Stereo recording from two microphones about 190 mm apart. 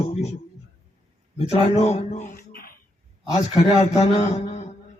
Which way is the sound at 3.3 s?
35° left (ahead or behind).